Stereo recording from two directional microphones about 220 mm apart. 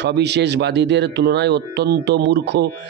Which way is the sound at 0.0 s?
50° right (ahead or behind).